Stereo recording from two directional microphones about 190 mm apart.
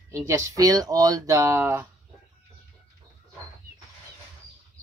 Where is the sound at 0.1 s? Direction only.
15° right (ahead or behind).